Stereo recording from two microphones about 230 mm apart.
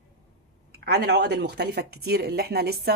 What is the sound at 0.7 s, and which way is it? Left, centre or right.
Speech, right.